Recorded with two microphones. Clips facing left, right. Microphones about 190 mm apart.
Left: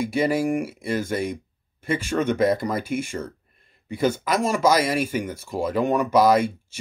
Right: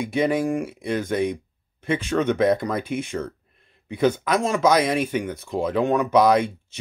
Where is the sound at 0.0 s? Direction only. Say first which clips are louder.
Even; 5° left (ahead or behind).